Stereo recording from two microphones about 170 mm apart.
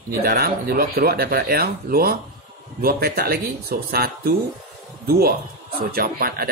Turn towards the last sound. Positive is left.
turn(degrees=-60)  # may be behind; listen again after turning